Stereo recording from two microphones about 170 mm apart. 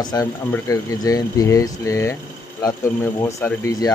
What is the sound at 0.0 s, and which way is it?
Speech, 25° left (ahead or behind).